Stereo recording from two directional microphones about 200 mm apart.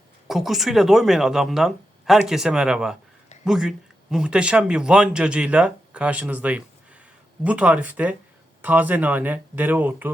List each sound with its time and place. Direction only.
0.3 s speech: centre (ahead or behind)